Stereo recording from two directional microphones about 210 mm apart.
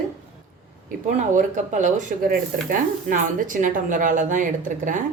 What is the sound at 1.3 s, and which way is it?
Speech, 35° right (ahead or behind).